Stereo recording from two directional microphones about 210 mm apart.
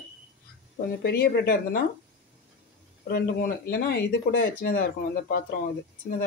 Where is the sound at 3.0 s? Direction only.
45° left (ahead or behind).